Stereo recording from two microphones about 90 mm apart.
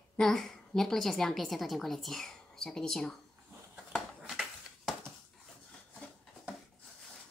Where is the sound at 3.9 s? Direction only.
Centre (ahead or behind).